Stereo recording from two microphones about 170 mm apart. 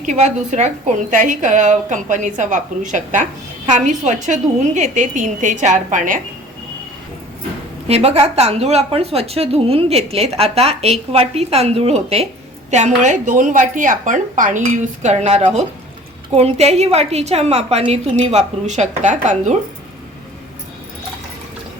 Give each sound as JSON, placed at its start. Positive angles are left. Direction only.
{"t": 0.0, "sound": "a woman's voice", "side_deg": -45}
{"t": 7.9, "sound": "a woman's voice", "side_deg": -40}